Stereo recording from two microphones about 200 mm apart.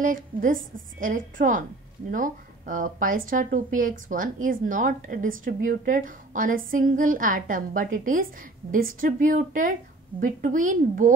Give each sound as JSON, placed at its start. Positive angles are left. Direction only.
{"t": 0.0, "sound": "a woman's voice", "side_deg": -40}